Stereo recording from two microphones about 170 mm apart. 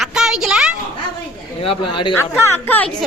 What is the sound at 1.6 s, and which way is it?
Speech, 30° left (ahead or behind).